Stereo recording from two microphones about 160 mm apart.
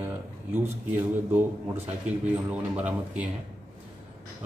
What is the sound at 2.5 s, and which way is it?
Speech, 10° right (ahead or behind).